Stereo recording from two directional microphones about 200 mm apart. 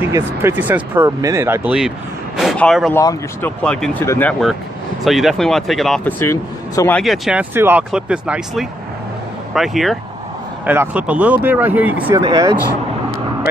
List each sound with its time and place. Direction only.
0.1 s speech: 10° right (ahead or behind)
2.9 s speech: 15° left (ahead or behind)
7.0 s speech: centre (ahead or behind)
12.2 s speech: 20° right (ahead or behind)